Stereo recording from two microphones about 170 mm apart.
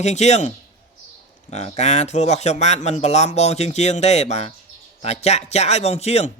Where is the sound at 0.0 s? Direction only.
40° left (ahead or behind).